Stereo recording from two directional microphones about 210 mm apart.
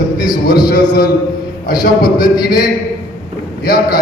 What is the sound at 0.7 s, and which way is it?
A man's voice, 40° left (ahead or behind).